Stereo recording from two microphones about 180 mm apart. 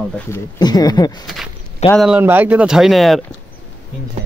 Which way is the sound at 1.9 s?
5° right (ahead or behind).